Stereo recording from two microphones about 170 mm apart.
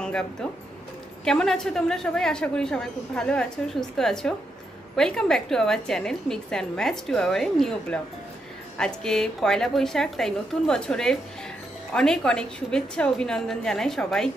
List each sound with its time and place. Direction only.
0.0 s a woman's voice: 5° left (ahead or behind)